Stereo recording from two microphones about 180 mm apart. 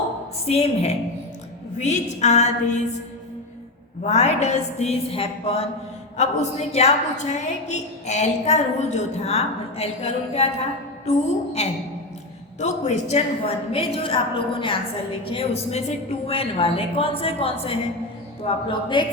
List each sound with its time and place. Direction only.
0.4 s a woman's voice: 35° left (ahead or behind)
4.0 s a woman's voice: 40° left (ahead or behind)